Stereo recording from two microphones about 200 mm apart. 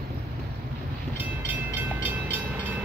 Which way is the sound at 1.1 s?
10° right (ahead or behind).